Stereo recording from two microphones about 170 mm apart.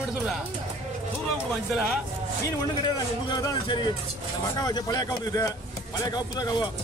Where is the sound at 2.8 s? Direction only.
25° left (ahead or behind).